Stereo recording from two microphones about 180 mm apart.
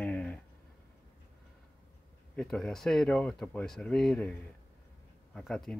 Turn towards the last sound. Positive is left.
turn(degrees=5)  # may be behind; listen again after turning